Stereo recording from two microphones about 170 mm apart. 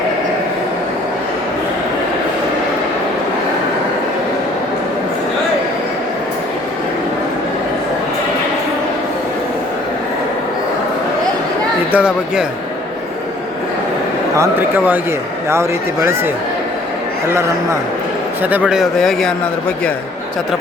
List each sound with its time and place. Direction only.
11.9 s speech: 5° right (ahead or behind)
14.3 s a man's voice: 15° right (ahead or behind); by 19.3 s centre (ahead or behind)